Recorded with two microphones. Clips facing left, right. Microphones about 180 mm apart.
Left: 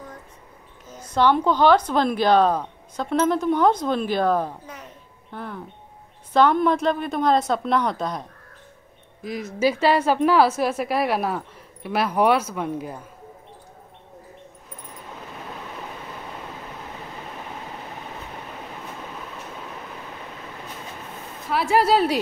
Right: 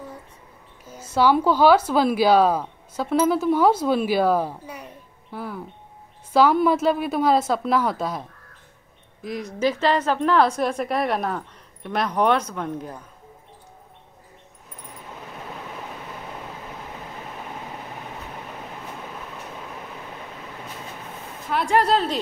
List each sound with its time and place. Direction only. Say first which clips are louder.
0.8 s a woman's voice: even; 10° right (ahead or behind); by 12.9 s 10° left (ahead or behind)
21.5 s a woman's voice: left 1 dB; 5° left (ahead or behind)